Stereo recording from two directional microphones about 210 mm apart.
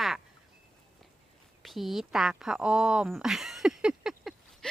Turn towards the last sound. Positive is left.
turn(degrees=0)  # may be behind; listen again after turning